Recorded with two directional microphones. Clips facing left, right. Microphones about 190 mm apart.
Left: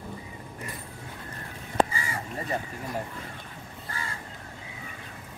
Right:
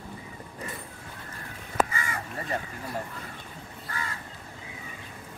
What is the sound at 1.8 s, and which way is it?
Crow, 30° left (ahead or behind).